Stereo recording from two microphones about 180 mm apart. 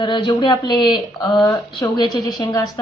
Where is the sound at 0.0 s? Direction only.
25° left (ahead or behind).